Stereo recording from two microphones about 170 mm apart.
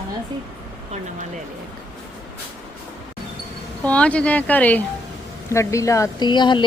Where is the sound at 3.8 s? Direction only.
5° left (ahead or behind).